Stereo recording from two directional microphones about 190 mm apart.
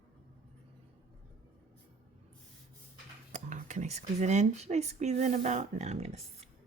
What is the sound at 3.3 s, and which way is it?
Speech, 40° right (ahead or behind).